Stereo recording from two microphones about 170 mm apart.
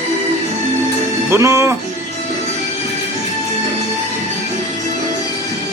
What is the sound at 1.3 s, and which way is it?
Music, 15° right (ahead or behind).